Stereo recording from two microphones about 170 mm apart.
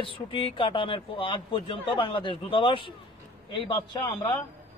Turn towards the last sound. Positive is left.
turn(degrees=25)  # may be behind; listen again after turning